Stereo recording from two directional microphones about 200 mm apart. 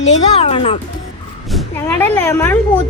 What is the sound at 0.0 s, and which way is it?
Speech, 35° left (ahead or behind).